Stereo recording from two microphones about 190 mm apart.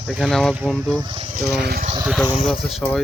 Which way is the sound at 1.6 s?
50° right (ahead or behind).